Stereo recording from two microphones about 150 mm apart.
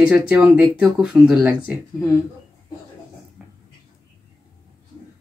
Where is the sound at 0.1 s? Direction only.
5° right (ahead or behind).